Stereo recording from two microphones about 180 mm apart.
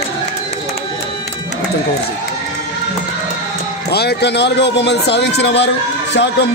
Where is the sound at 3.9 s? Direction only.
65° left (ahead or behind).